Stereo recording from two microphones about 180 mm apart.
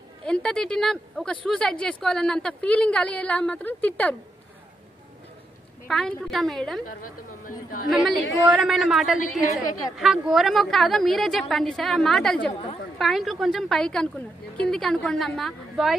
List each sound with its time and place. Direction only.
0.2 s speech: 5° left (ahead or behind)
5.9 s speech: centre (ahead or behind)
7.0 s speech: 50° left (ahead or behind)
8.5 s speech: centre (ahead or behind)
9.7 s a woman's voice: 20° left (ahead or behind)
9.9 s speech: centre (ahead or behind)